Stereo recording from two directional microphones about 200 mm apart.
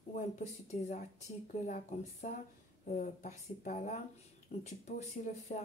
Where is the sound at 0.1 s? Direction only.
35° left (ahead or behind).